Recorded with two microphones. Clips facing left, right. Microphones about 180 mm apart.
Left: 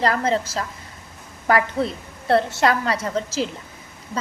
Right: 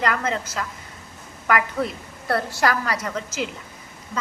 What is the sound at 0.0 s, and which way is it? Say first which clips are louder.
A woman's voice: left 4 dB; 35° left (ahead or behind).